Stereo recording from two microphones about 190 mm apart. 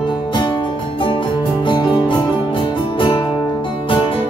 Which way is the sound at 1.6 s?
25° left (ahead or behind).